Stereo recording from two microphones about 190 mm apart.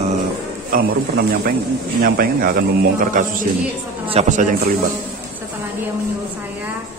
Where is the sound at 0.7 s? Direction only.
50° right (ahead or behind).